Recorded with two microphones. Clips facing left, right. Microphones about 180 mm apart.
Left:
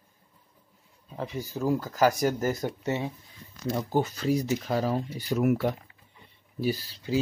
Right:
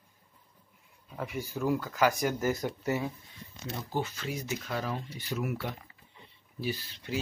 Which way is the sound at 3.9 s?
40° left (ahead or behind).